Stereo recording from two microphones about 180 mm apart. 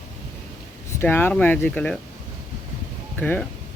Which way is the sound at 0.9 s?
10° left (ahead or behind).